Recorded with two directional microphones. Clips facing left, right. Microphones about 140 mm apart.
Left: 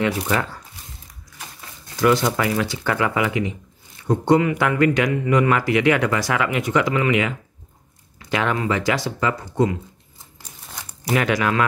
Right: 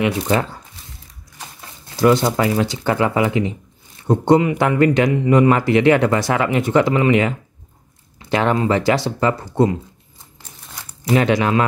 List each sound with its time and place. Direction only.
0.3 s speech: 30° right (ahead or behind)
2.0 s speech: 30° right (ahead or behind)
11.1 s speech: 25° right (ahead or behind)